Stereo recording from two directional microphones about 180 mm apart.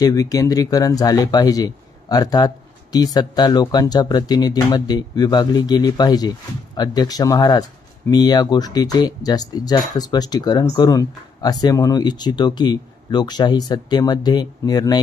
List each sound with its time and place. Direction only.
0.0 s speech: 20° left (ahead or behind)